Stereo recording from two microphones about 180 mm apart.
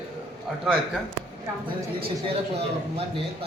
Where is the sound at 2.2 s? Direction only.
35° right (ahead or behind).